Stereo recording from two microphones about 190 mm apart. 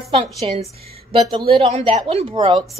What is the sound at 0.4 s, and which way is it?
A woman's voice, 30° right (ahead or behind).